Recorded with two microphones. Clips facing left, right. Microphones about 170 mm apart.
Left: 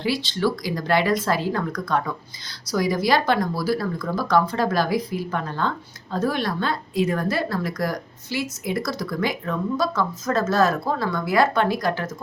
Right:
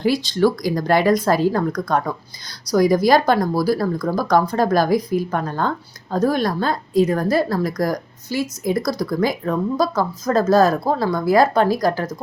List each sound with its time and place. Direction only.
0.0 s speech: 45° right (ahead or behind)